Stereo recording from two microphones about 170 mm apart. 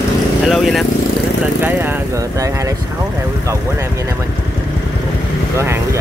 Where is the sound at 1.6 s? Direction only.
10° right (ahead or behind).